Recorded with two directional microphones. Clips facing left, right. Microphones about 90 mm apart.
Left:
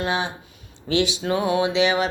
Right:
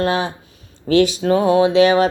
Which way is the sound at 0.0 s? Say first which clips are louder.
Right 6 dB; 40° right (ahead or behind).